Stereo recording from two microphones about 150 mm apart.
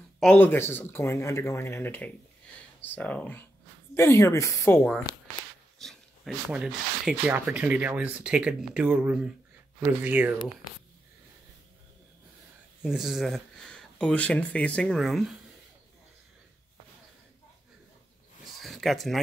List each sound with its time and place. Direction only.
0.2 s speech: 10° left (ahead or behind)
5.8 s speech: centre (ahead or behind)
12.8 s speech: 5° right (ahead or behind)
18.4 s a sound: centre (ahead or behind)